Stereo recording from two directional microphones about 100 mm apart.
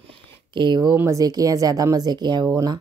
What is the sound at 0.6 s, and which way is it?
Speech, 45° right (ahead or behind).